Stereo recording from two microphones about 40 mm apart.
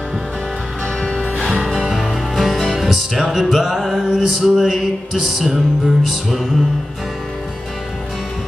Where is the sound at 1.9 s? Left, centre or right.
Centre.